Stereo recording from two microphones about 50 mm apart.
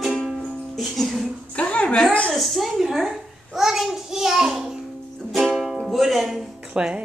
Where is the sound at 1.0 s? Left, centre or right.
Centre.